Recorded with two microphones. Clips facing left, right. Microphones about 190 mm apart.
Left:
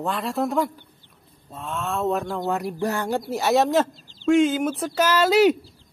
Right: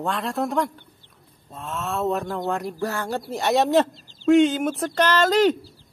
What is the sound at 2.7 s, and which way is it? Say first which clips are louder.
Speech: left 2 dB; 20° left (ahead or behind).